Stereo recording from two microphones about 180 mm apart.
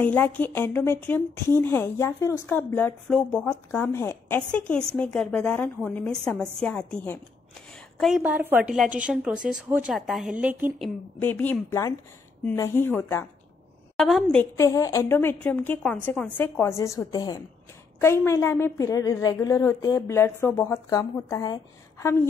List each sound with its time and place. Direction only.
0.0 s a woman's voice: 10° left (ahead or behind)
8.0 s a woman's voice: 5° right (ahead or behind)
11.1 s a woman's voice: 10° left (ahead or behind)
13.9 s a woman's voice: centre (ahead or behind)